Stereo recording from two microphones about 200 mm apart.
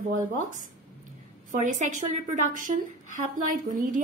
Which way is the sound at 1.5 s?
40° right (ahead or behind).